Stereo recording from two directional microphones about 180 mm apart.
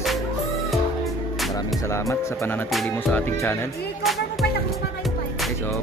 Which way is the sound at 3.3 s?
15° left (ahead or behind).